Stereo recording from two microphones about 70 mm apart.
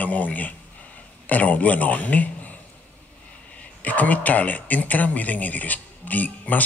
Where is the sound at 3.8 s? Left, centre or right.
Left.